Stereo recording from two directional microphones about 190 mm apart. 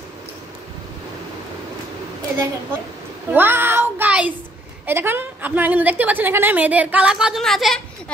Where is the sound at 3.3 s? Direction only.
10° right (ahead or behind).